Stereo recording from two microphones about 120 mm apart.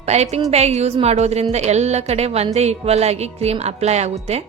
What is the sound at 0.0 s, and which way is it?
A woman's voice, 65° right (ahead or behind).